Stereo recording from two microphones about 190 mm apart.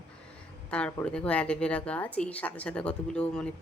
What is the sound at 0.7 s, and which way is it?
Speech, 10° left (ahead or behind).